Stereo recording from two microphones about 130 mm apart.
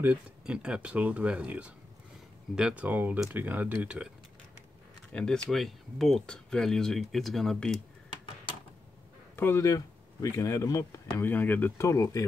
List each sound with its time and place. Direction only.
0.0 s speech: 10° right (ahead or behind)
5.1 s speech: 5° left (ahead or behind)
9.4 s speech: 20° left (ahead or behind)
11.9 s speech: 25° left (ahead or behind)